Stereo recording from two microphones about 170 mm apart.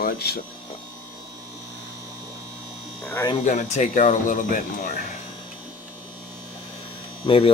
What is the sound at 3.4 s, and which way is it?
Speech, 45° left (ahead or behind).